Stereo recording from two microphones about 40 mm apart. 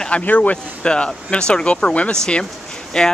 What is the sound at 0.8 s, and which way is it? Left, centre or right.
Speech, left.